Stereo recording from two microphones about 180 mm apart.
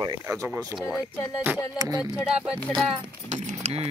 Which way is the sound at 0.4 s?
15° right (ahead or behind).